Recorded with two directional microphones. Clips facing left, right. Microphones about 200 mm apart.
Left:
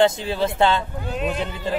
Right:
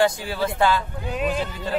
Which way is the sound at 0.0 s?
20° left (ahead or behind).